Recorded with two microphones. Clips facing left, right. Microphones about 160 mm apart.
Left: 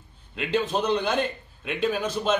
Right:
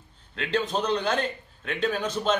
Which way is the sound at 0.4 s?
10° left (ahead or behind).